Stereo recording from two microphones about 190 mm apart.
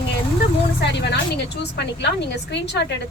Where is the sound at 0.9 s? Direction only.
65° left (ahead or behind).